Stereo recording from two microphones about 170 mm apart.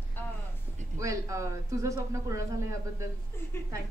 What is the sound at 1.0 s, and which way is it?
Speech, 20° right (ahead or behind).